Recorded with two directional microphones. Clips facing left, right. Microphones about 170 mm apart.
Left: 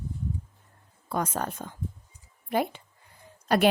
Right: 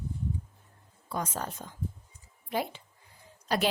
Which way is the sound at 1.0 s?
60° left (ahead or behind).